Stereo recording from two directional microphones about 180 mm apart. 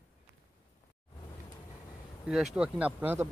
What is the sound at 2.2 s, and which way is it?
Speech, centre (ahead or behind).